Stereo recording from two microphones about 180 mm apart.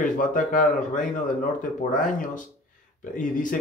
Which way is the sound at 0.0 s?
45° left (ahead or behind).